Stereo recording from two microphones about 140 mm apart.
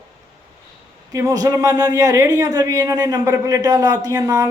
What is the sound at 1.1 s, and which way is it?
Speech, 25° right (ahead or behind).